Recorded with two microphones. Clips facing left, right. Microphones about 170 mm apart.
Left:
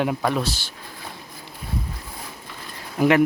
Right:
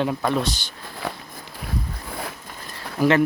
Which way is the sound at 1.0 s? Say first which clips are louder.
Right 9 dB; 70° right (ahead or behind).